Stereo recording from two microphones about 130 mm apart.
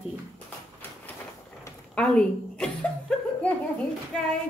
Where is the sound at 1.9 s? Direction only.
5° left (ahead or behind).